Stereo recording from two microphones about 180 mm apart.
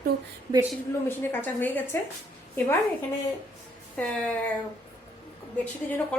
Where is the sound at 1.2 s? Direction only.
10° left (ahead or behind).